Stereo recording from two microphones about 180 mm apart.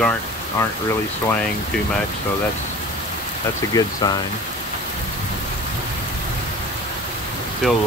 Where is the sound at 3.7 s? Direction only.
20° left (ahead or behind).